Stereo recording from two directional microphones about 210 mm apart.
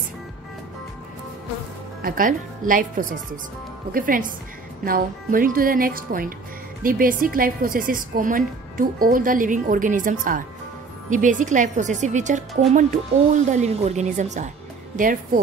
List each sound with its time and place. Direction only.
2.0 s a woman's voice: 40° right (ahead or behind)